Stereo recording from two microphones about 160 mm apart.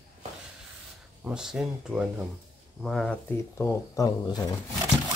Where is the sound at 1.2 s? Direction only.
5° right (ahead or behind).